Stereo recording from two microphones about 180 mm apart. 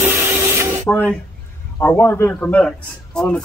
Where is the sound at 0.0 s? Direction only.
15° right (ahead or behind).